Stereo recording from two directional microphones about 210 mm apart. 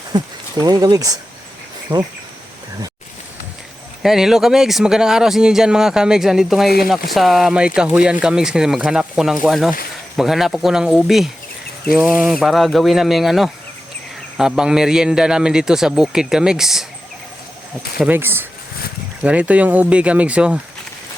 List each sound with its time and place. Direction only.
0.1 s speech: 20° right (ahead or behind)
1.9 s insect: 20° right (ahead or behind)
4.0 s speech: centre (ahead or behind)
17.9 s speech: 5° right (ahead or behind)